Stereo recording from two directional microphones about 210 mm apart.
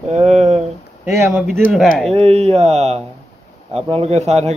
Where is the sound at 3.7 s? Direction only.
30° right (ahead or behind).